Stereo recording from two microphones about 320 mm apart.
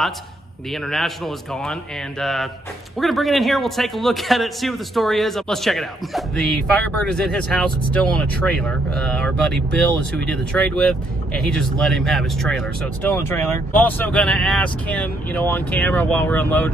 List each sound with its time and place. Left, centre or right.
0.7 s speech: centre